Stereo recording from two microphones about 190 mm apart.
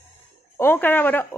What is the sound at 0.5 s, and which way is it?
Speech, 10° left (ahead or behind).